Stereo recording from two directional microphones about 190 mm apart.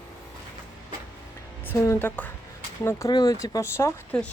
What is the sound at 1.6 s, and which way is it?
Speech, 10° left (ahead or behind).